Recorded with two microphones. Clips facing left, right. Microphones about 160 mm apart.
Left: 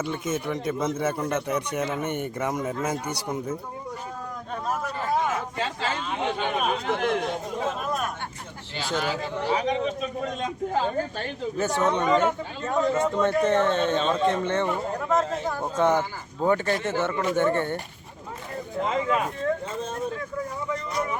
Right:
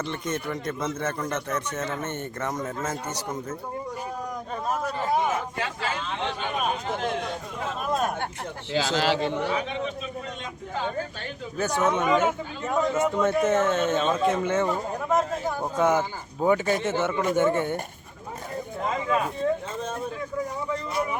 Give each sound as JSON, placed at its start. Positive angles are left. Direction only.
{"t": 0.0, "sound": "a man's voice", "side_deg": 5}
{"t": 5.0, "sound": "a sound", "side_deg": -20}
{"t": 6.7, "sound": "a man's voice", "side_deg": 70}
{"t": 8.7, "sound": "a man's voice", "side_deg": -90}
{"t": 9.5, "sound": "a man's voice", "side_deg": 35}
{"t": 11.5, "sound": "speech", "side_deg": 0}
{"t": 20.9, "sound": "a sound", "side_deg": -10}